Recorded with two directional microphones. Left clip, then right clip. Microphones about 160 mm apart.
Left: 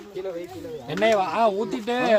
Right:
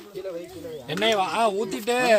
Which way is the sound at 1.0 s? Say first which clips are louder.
Left 2 dB; 10° right (ahead or behind).